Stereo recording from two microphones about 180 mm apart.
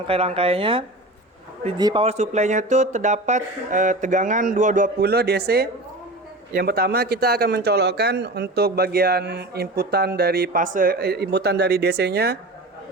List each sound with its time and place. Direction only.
0.1 s speech: 35° right (ahead or behind)
4.9 s a man's voice: 60° right (ahead or behind)